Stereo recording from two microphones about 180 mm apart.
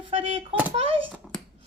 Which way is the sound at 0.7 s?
30° right (ahead or behind).